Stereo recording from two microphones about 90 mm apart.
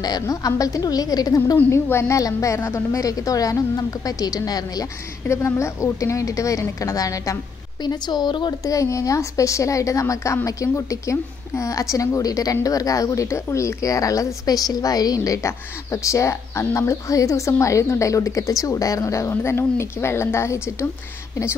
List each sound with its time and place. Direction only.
0.0 s a woman's voice: 45° left (ahead or behind)
1.7 s a woman's voice: 30° left (ahead or behind); by 4.8 s 45° left (ahead or behind)
5.3 s a woman's voice: 30° left (ahead or behind)
7.8 s a woman's voice: 50° left (ahead or behind)
8.6 s a woman's voice: 35° left (ahead or behind)